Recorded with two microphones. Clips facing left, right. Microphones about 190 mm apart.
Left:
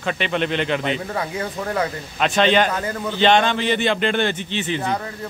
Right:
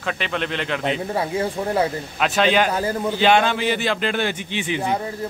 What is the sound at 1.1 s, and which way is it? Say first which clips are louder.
Speech: right 3 dB; 30° right (ahead or behind).